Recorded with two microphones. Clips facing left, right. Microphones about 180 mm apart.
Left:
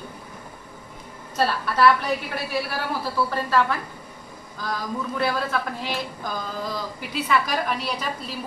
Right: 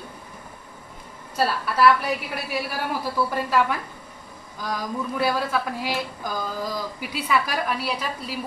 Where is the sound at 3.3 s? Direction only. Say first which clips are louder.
Left 1 dB; 10° right (ahead or behind).